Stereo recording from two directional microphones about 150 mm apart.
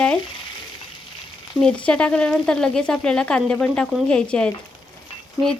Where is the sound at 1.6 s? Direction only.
5° left (ahead or behind).